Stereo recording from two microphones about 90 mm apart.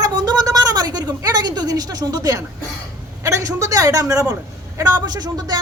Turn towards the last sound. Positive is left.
turn(degrees=-50)  # may be behind; listen again after turning